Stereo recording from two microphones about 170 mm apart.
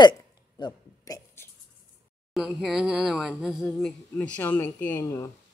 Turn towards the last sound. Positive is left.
turn(degrees=15)  # may be behind; listen again after turning